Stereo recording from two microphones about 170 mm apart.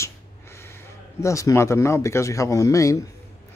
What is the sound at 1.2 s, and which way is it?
Speech, 20° left (ahead or behind).